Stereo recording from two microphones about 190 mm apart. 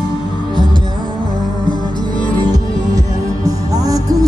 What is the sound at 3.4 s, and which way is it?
Music, 20° right (ahead or behind).